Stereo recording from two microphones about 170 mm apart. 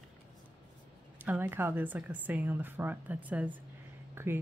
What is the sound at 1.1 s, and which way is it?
Speech, 10° right (ahead or behind).